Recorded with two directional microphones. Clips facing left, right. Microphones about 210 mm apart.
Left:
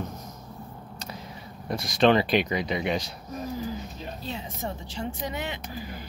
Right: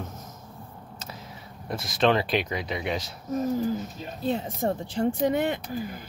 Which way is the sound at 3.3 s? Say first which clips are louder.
Right 7 dB; 50° right (ahead or behind).